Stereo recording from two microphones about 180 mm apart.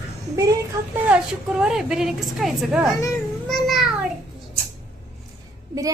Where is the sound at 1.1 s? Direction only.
5° right (ahead or behind).